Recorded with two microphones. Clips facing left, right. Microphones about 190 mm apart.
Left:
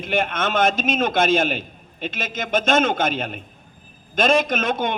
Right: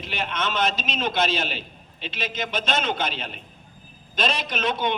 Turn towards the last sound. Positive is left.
turn(degrees=50)  # may be behind; listen again after turning